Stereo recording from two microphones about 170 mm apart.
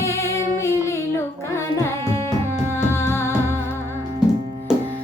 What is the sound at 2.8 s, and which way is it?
Music, 15° left (ahead or behind).